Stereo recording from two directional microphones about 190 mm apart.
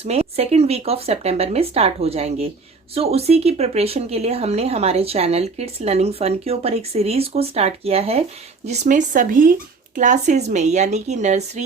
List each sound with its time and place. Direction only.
0.0 s speech: 30° right (ahead or behind)